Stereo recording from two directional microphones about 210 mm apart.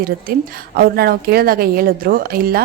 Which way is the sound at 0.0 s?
45° right (ahead or behind).